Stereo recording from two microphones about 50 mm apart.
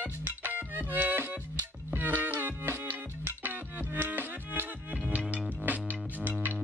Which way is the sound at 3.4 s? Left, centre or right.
Right.